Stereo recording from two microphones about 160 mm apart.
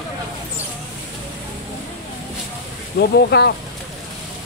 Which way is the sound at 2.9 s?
90° left.